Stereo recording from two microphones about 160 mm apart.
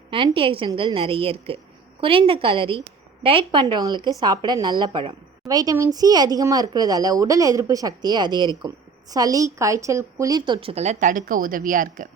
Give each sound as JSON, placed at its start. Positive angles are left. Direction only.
{"t": 0.3, "sound": "a woman's voice", "side_deg": -35}